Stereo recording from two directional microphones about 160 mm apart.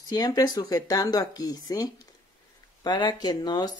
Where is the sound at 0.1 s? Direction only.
25° left (ahead or behind).